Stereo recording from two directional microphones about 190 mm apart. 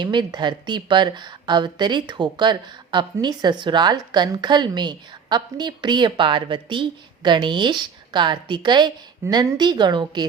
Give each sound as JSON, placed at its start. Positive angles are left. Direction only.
{"t": 0.0, "sound": "speech", "side_deg": -25}